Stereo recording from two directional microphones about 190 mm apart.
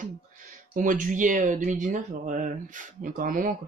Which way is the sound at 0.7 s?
45° right (ahead or behind).